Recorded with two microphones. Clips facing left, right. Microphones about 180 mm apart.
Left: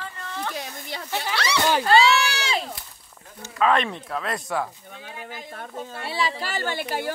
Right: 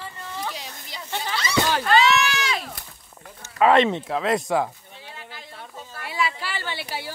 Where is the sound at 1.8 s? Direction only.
30° left (ahead or behind).